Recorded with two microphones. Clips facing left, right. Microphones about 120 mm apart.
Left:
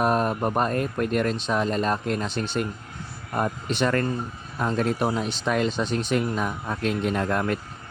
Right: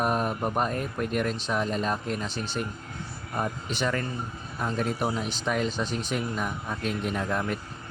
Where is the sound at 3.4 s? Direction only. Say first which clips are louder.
Left 5 dB; 65° left (ahead or behind).